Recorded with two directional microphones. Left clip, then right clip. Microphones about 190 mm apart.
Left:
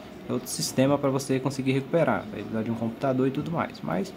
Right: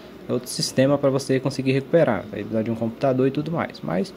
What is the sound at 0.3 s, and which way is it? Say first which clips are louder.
Speech: right 5 dB; 20° right (ahead or behind).